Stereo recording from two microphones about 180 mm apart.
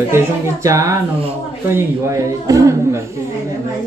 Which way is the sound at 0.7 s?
15° right (ahead or behind).